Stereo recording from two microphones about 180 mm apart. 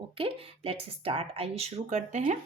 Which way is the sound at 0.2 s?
30° right (ahead or behind).